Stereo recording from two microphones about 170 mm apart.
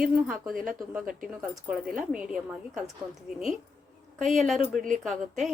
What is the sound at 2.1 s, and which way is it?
Speech, 5° right (ahead or behind).